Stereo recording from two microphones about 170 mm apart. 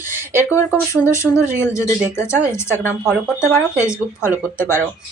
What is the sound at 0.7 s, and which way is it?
Speech, 15° left (ahead or behind).